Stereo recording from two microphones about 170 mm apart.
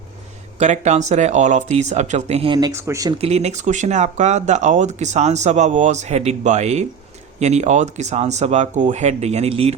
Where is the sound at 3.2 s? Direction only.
40° right (ahead or behind).